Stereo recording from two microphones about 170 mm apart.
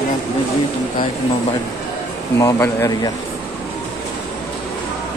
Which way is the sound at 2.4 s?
20° left (ahead or behind).